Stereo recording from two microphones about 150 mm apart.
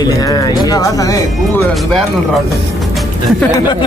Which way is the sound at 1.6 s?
5° left (ahead or behind).